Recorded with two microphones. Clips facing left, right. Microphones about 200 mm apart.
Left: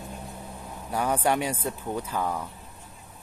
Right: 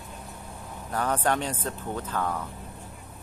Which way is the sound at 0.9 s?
10° left (ahead or behind).